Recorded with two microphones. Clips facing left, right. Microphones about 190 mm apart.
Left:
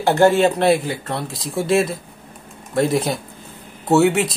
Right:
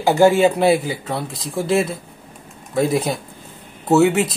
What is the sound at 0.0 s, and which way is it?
Speech, 5° right (ahead or behind).